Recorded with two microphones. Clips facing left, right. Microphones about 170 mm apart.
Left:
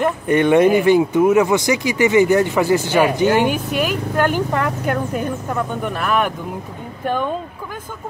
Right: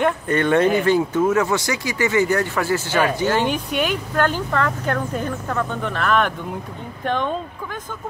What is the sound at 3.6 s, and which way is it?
Speech, centre (ahead or behind).